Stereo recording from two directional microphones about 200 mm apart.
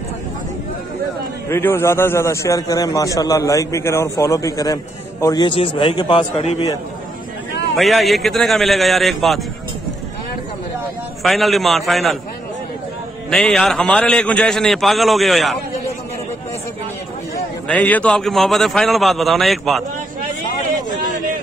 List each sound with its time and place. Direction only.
1.5 s a man's voice: 10° left (ahead or behind); by 6.6 s 30° left (ahead or behind)
7.7 s a man's voice: centre (ahead or behind)
11.2 s a man's voice: centre (ahead or behind)
13.3 s a man's voice: centre (ahead or behind)
17.6 s a man's voice: 5° left (ahead or behind)